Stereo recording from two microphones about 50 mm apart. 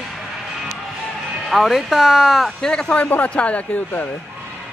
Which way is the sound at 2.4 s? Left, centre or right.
Centre.